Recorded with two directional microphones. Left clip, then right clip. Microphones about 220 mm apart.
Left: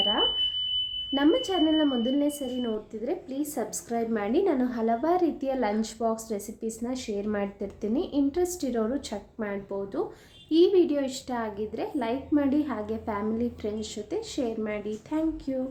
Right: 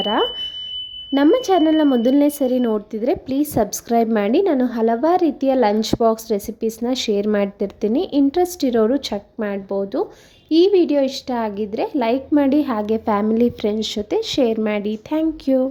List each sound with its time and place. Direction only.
0.0 s speech: 40° right (ahead or behind)